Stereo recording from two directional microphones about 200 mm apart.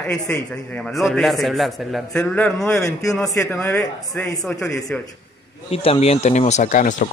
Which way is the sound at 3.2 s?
15° left (ahead or behind).